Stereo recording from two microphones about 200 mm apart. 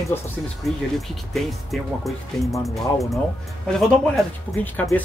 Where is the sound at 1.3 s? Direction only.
Centre (ahead or behind).